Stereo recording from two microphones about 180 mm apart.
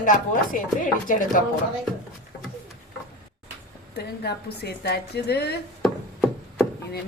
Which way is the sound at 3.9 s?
65° left (ahead or behind).